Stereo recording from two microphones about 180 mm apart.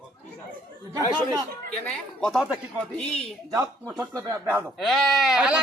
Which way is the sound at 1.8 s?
5° left (ahead or behind).